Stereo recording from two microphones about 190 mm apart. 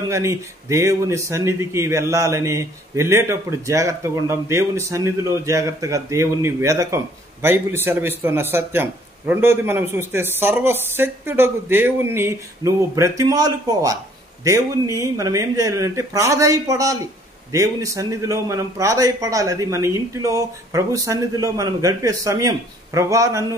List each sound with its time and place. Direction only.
0.1 s speech: 15° right (ahead or behind)